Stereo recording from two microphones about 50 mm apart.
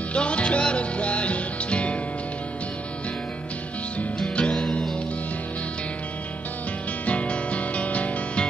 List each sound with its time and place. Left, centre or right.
0.1 s music: left
4.4 s music: left
7.1 s music: left